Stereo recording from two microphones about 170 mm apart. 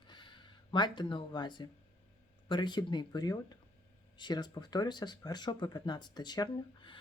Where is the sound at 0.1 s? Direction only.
30° left (ahead or behind).